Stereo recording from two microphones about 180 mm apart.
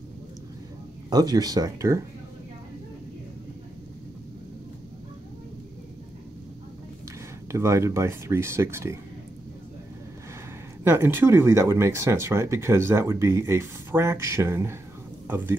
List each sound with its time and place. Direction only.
1.1 s speech: 20° right (ahead or behind)
7.5 s speech: 15° right (ahead or behind)
10.8 s speech: 15° right (ahead or behind)